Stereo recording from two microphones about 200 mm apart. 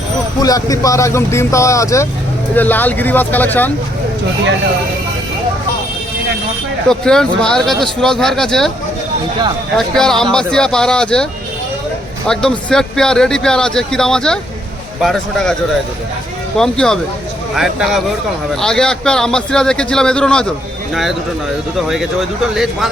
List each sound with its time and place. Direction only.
0.4 s speech: 15° left (ahead or behind)
6.8 s speech: 5° left (ahead or behind)
9.7 s speech: centre (ahead or behind)
12.3 s speech: 5° left (ahead or behind)
16.6 s speech: 5° left (ahead or behind)